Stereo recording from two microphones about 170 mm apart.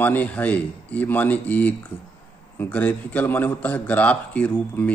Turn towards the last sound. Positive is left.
turn(degrees=10)  # may be behind; listen again after turning